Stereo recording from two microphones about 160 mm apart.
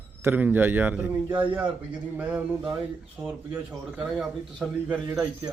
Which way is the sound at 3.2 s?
15° right (ahead or behind).